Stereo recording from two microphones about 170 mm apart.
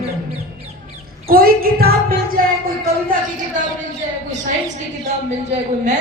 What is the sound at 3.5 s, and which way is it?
Speech, 50° right (ahead or behind).